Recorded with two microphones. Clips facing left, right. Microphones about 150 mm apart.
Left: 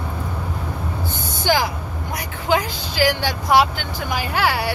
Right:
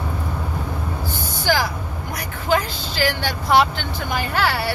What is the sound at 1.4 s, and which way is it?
Vehicle, 20° left (ahead or behind).